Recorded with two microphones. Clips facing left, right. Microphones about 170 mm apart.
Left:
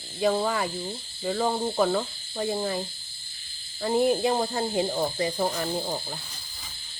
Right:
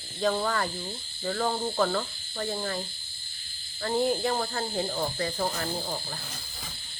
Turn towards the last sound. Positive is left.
turn(degrees=15)  # may be behind; listen again after turning